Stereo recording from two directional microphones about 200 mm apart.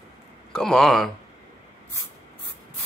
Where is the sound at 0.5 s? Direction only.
Centre (ahead or behind).